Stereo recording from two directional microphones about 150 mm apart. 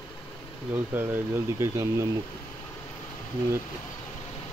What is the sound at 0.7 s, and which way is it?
Speech, 15° right (ahead or behind).